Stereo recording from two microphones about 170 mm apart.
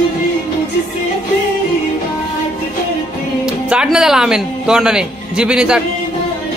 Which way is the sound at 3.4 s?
5° right (ahead or behind).